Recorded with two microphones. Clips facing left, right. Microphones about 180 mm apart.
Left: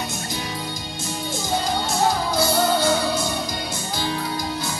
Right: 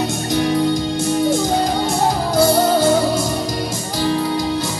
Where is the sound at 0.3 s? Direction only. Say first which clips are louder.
Right 14 dB; 70° right (ahead or behind).